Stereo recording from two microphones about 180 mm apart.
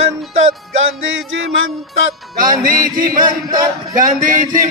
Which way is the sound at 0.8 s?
90° right.